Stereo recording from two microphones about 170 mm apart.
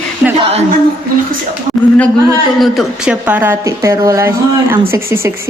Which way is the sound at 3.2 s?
10° right (ahead or behind).